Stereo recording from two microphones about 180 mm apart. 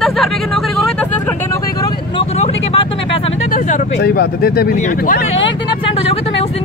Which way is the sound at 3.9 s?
65° left (ahead or behind).